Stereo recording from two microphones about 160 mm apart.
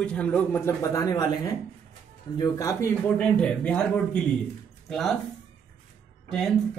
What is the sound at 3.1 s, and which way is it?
Speech, 5° left (ahead or behind).